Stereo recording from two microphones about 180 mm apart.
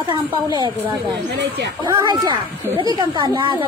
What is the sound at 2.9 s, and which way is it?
Speech, 20° right (ahead or behind).